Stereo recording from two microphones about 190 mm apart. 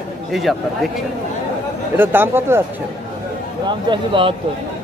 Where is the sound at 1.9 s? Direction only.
10° right (ahead or behind).